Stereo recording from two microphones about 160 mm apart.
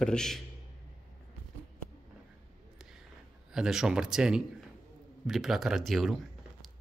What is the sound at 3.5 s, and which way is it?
A man's voice, 5° right (ahead or behind).